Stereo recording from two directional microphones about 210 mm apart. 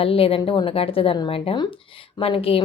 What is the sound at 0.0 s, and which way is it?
A woman's voice, 25° left (ahead or behind).